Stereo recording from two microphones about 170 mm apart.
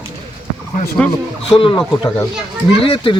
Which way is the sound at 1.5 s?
30° left (ahead or behind).